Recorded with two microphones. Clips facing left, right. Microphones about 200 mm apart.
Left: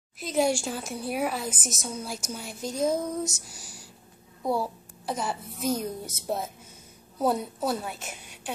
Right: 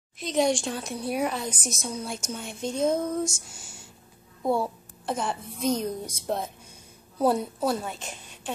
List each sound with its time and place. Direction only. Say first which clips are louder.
0.2 s a woman's voice: right 1 dB; 5° left (ahead or behind)
3.6 s whispering: even; 25° right (ahead or behind)
4.4 s a child's voice: right 2 dB; centre (ahead or behind)